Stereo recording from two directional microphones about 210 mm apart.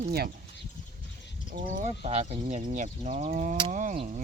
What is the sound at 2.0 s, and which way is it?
Speech, 30° right (ahead or behind).